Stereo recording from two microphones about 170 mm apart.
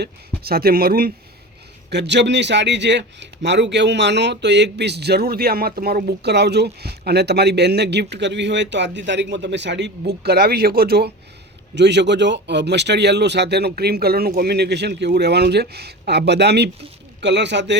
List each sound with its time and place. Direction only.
0.0 s speech: 65° right (ahead or behind)
1.9 s a man's voice: 85° right; by 11.1 s 65° right (ahead or behind)
11.7 s a man's voice: 90° right